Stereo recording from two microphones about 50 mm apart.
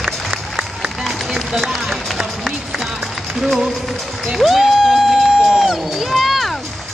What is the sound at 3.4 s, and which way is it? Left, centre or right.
Speech, centre.